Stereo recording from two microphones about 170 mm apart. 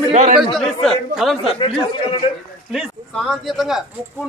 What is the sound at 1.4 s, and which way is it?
Speech, 30° left (ahead or behind).